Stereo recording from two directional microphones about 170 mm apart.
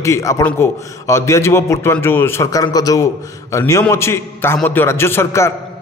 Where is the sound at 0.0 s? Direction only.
20° left (ahead or behind).